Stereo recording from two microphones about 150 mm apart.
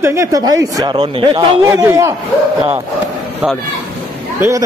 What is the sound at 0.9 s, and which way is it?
Speech, 35° right (ahead or behind).